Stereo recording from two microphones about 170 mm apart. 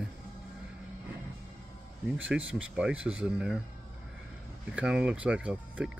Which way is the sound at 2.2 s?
10° right (ahead or behind).